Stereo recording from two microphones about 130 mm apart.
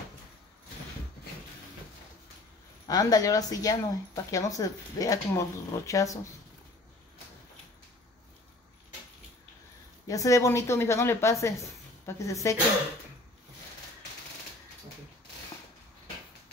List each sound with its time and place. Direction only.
2.9 s speech: 30° left (ahead or behind)
10.0 s speech: 25° left (ahead or behind)